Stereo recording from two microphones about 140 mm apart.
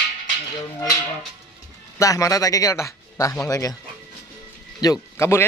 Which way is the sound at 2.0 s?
25° left (ahead or behind).